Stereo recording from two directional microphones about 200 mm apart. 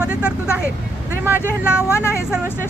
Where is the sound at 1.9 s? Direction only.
15° left (ahead or behind).